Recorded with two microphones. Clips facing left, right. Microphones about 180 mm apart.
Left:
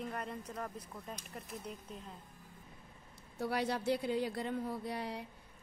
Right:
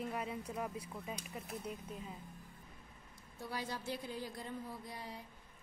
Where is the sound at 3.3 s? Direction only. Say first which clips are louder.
Left 8 dB; 70° left (ahead or behind).